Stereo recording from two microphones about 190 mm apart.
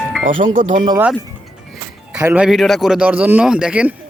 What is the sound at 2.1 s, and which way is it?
A man's voice, 5° right (ahead or behind).